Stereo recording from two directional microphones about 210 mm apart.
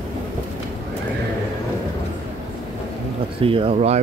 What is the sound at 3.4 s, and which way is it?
Speech, 25° right (ahead or behind).